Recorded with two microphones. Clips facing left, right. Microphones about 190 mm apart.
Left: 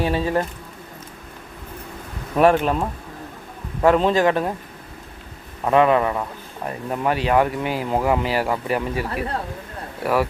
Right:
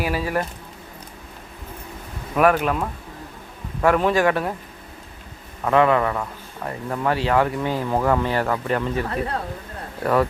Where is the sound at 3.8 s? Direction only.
20° left (ahead or behind).